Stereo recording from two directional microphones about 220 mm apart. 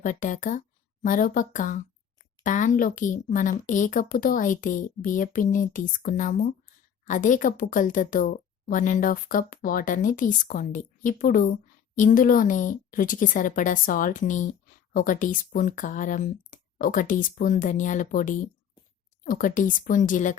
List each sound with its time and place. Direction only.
0.0 s a woman's voice: 35° left (ahead or behind)